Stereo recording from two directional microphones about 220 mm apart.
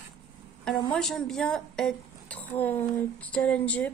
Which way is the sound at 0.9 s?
Centre (ahead or behind).